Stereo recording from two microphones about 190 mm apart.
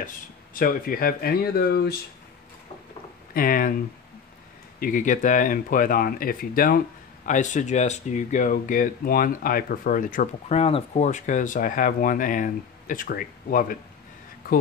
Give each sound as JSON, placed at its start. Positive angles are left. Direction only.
{"t": 0.6, "sound": "speech", "side_deg": 50}
{"t": 3.3, "sound": "speech", "side_deg": 50}